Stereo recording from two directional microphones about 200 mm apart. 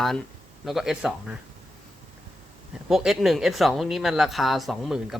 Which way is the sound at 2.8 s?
Centre (ahead or behind).